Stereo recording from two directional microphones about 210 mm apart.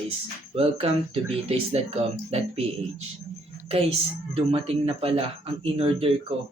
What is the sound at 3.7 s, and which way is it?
A woman's voice, 30° right (ahead or behind).